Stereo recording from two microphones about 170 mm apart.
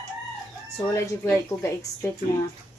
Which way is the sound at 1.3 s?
15° left (ahead or behind).